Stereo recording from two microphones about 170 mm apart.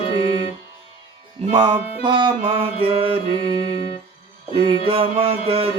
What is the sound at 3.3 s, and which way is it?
Music, 35° left (ahead or behind).